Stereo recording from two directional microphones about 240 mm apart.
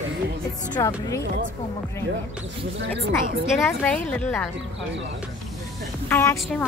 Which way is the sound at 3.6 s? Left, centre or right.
Centre.